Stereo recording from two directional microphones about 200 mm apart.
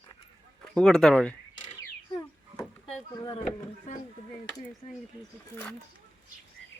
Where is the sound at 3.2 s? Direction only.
20° left (ahead or behind).